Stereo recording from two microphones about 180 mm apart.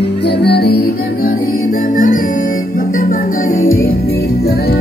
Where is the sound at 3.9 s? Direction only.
60° left (ahead or behind).